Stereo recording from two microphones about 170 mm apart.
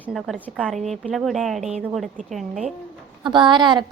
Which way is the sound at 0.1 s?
Centre (ahead or behind).